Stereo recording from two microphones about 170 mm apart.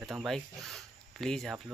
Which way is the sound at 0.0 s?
Centre (ahead or behind).